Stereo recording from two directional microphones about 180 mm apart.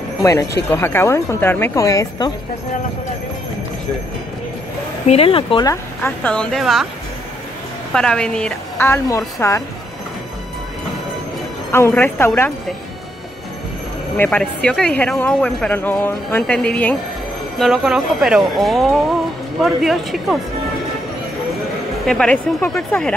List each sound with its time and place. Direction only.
0.2 s speech: 15° left (ahead or behind)
5.0 s speech: 35° left (ahead or behind)
5.7 s speech: 10° left (ahead or behind)
7.9 s speech: 5° left (ahead or behind)
11.7 s speech: 10° left (ahead or behind)
14.1 s speech: 10° left (ahead or behind)
22.0 s speech: 5° left (ahead or behind)